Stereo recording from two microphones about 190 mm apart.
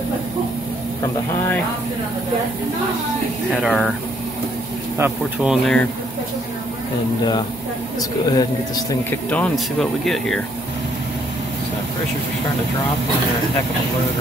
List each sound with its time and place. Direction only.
3.6 s speech: 5° right (ahead or behind)
4.9 s speech: 10° right (ahead or behind)
8.3 s a man's voice: 20° left (ahead or behind)
9.3 s speech: 5° left (ahead or behind)